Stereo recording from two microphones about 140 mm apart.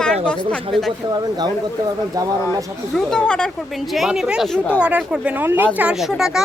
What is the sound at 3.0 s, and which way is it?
Speech, 5° left (ahead or behind).